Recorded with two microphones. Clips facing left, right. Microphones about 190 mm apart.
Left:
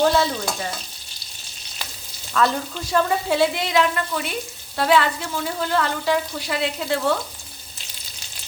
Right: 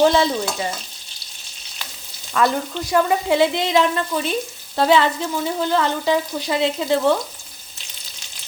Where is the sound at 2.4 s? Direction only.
10° right (ahead or behind).